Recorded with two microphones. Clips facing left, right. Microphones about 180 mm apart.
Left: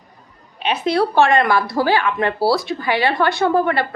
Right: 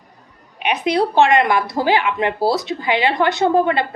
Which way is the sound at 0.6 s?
15° right (ahead or behind).